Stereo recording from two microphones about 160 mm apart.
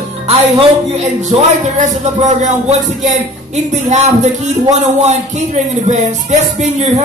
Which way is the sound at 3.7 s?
45° right (ahead or behind).